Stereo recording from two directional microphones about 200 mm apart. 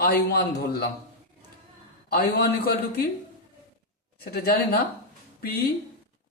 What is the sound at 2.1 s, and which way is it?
Speech, 50° left (ahead or behind).